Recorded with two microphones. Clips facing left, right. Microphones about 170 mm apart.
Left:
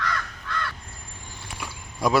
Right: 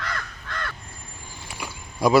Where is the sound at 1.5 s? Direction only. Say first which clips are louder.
Right 3 dB; centre (ahead or behind).